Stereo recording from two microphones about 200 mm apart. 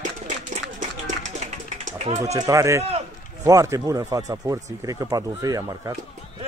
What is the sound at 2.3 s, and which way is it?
Speech, 15° right (ahead or behind).